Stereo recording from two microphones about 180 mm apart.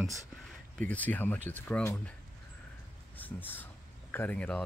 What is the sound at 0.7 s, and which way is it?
Speech, 10° left (ahead or behind).